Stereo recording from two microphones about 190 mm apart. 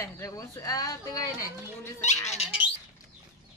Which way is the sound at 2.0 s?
35° left (ahead or behind).